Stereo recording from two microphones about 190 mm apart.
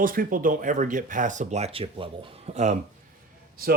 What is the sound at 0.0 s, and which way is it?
Speech, 45° right (ahead or behind).